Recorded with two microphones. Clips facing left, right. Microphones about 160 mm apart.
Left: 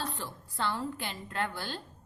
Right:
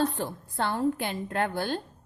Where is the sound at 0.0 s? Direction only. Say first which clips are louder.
Right 10 dB; 55° right (ahead or behind).